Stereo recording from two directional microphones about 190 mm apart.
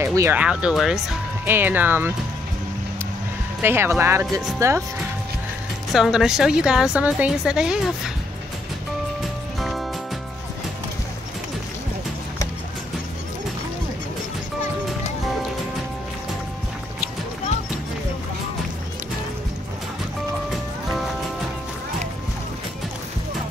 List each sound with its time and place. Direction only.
0.0 s speech: 15° right (ahead or behind)
3.6 s speech: 10° right (ahead or behind)
5.9 s a woman's voice: centre (ahead or behind)
9.6 s music: centre (ahead or behind)